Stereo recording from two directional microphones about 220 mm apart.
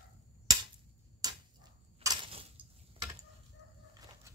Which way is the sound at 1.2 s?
20° right (ahead or behind).